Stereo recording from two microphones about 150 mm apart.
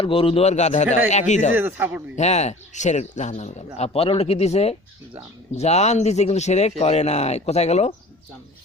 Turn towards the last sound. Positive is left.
turn(degrees=45)  # may be behind; listen again after turning